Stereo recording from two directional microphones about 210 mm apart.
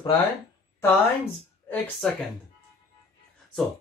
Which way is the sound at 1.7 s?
5° left (ahead or behind).